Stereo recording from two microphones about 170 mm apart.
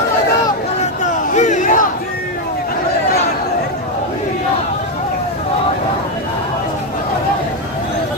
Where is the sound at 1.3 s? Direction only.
45° left (ahead or behind).